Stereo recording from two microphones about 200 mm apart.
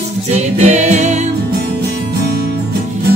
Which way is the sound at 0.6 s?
35° right (ahead or behind).